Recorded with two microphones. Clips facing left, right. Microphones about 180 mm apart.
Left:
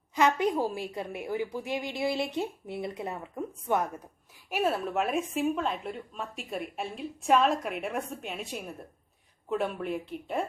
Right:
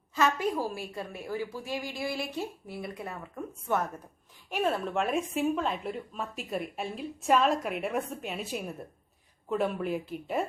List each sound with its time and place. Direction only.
0.2 s a woman's voice: 20° left (ahead or behind)
4.4 s a woman's voice: 5° left (ahead or behind)